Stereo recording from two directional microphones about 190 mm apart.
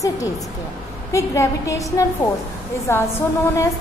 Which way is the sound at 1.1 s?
15° left (ahead or behind).